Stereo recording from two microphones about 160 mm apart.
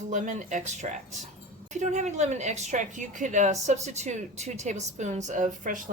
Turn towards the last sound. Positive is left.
turn(degrees=-55)  # may be behind; listen again after turning